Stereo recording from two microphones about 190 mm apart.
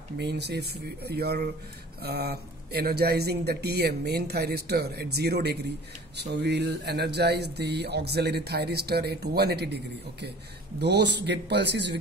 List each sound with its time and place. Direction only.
0.2 s speech: 60° right (ahead or behind)
10.8 s speech: 65° right (ahead or behind)